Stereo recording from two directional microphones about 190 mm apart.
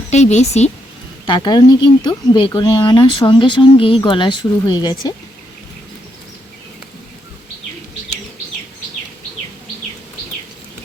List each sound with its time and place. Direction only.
0.1 s speech: 35° left (ahead or behind)
1.3 s speech: 20° left (ahead or behind)